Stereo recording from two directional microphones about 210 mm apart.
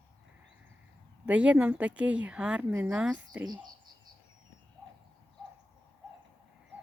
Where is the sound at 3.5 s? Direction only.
20° right (ahead or behind).